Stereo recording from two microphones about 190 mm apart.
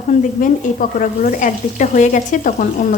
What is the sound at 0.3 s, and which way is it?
Speech, 45° left (ahead or behind).